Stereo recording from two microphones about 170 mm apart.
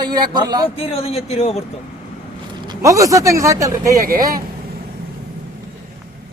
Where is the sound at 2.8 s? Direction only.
20° right (ahead or behind).